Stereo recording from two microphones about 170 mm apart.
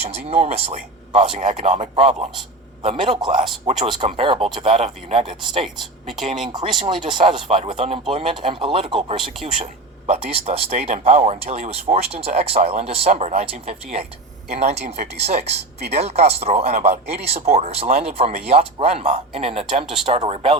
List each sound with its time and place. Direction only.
0.0 s a man's voice: 35° right (ahead or behind)
5.6 s speech: centre (ahead or behind)
6.5 s speech: 30° right (ahead or behind)